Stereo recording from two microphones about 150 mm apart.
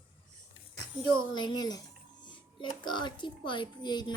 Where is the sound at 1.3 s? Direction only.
30° left (ahead or behind).